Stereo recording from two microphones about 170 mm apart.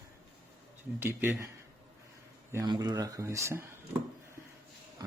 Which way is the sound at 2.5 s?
20° right (ahead or behind).